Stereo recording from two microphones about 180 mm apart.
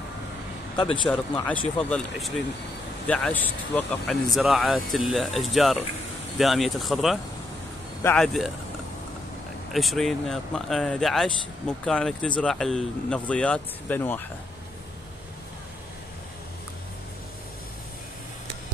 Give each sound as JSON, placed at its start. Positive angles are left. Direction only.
{"t": 0.7, "sound": "a man's voice", "side_deg": 30}
{"t": 1.8, "sound": "speech", "side_deg": 5}
{"t": 8.0, "sound": "speech", "side_deg": 10}
{"t": 9.7, "sound": "speech", "side_deg": 0}